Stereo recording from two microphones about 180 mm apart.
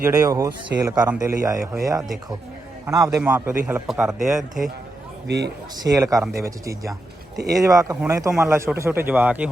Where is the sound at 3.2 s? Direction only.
10° right (ahead or behind).